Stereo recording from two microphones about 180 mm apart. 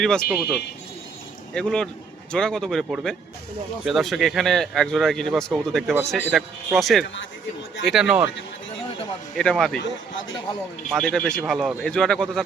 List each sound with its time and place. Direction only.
0.0 s speech: 5° left (ahead or behind)
9.4 s speech: 5° left (ahead or behind)
9.7 s a man's voice: 85° left
10.8 s speech: 5° left (ahead or behind)